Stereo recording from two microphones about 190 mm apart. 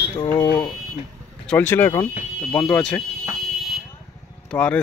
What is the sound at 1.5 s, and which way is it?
Speech, 10° left (ahead or behind).